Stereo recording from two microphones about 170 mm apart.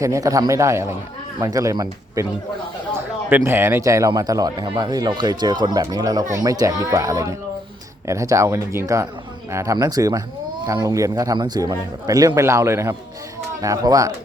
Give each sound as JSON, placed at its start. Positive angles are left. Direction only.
{"t": 0.0, "sound": "a man's voice", "side_deg": -20}
{"t": 3.2, "sound": "a man's voice", "side_deg": -10}